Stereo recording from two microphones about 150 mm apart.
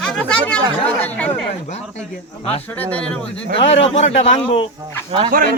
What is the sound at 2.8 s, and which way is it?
Speech, 10° left (ahead or behind).